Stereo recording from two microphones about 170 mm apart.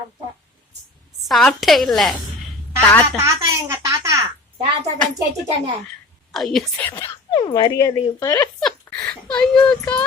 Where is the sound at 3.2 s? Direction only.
20° right (ahead or behind).